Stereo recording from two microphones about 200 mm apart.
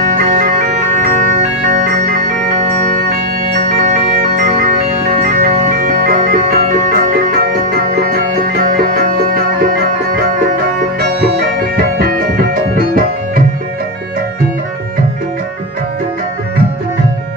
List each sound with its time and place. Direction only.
1.8 s music: 40° right (ahead or behind)
4.4 s music: 45° right (ahead or behind)
5.2 s organ: 45° right (ahead or behind)
8.0 s music: 45° right (ahead or behind)
11.7 s music: 45° right (ahead or behind)